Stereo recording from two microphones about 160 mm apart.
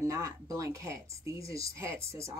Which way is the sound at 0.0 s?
20° right (ahead or behind).